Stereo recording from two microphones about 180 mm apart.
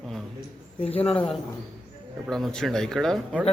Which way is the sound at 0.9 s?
35° left (ahead or behind).